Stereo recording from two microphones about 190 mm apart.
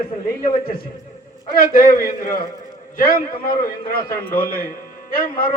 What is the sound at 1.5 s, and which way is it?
A man's voice, 50° left (ahead or behind).